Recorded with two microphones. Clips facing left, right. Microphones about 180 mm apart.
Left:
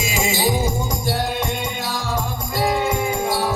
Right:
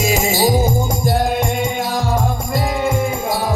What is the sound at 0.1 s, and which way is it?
Music, 40° right (ahead or behind).